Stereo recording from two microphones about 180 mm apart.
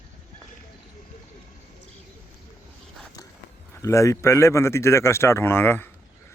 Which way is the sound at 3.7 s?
15° left (ahead or behind).